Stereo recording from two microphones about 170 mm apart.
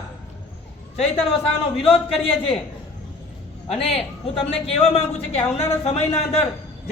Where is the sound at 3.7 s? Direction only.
35° left (ahead or behind).